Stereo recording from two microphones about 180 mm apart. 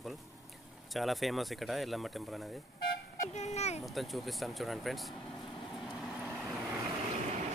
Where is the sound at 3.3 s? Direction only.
40° left (ahead or behind).